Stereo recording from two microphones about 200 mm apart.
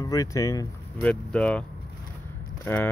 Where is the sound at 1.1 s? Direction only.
5° left (ahead or behind).